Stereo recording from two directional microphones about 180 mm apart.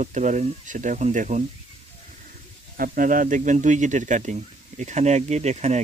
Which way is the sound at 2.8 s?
50° right (ahead or behind).